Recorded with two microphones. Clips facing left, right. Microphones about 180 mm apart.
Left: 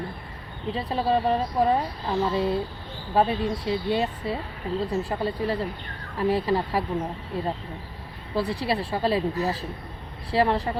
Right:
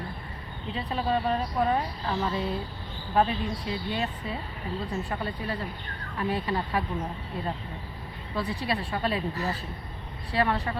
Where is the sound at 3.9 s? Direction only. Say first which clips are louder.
Left 6 dB; 35° left (ahead or behind).